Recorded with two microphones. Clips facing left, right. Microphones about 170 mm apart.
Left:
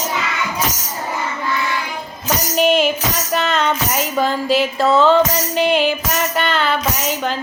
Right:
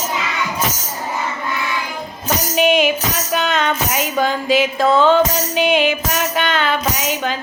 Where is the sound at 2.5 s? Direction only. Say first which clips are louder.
Even; centre (ahead or behind).